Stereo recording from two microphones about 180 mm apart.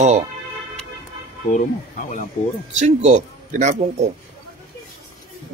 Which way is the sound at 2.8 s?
40° right (ahead or behind).